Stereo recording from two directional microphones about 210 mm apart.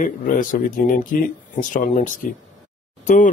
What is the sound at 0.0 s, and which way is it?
Speech, 40° left (ahead or behind).